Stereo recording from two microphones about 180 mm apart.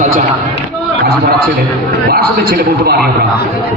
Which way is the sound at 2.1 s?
60° right (ahead or behind).